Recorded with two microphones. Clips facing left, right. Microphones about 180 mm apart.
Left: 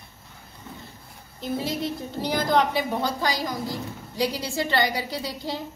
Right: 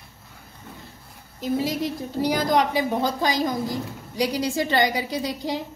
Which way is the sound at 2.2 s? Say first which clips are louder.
Right 1 dB; 10° right (ahead or behind).